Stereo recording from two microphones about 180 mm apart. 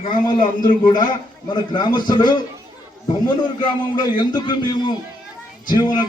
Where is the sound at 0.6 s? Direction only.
25° left (ahead or behind).